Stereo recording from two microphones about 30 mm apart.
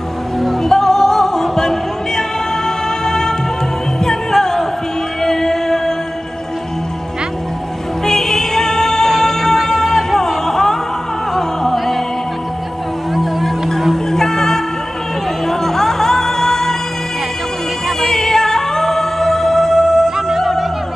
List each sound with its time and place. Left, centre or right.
0.4 s music: centre
8.0 s music: centre
13.1 s music: centre
14.1 s music: centre
18.1 s music: centre
20.2 s music: centre